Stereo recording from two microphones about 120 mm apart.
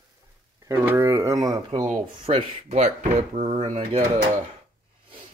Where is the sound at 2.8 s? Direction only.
85° right.